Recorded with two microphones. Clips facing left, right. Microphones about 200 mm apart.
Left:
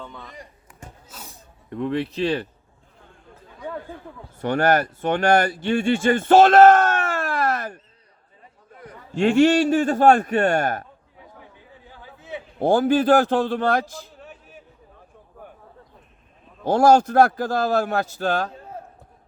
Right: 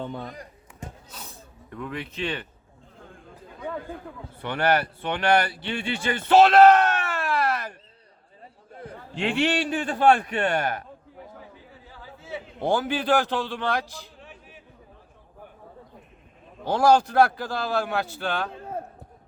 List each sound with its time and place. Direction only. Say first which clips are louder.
1.7 s speech: left 9 dB; 30° left (ahead or behind)
4.4 s speech: left 4 dB; 45° left (ahead or behind)
8.7 s a sound: right 3 dB; 30° right (ahead or behind)
9.1 s a man's voice: left 9 dB; 45° left (ahead or behind)
12.5 s a man's voice: left 7 dB; 45° left (ahead or behind)
16.6 s a man's voice: left 4 dB; 45° left (ahead or behind)